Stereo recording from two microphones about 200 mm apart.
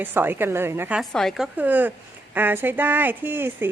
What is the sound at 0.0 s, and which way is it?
Speech, 10° right (ahead or behind).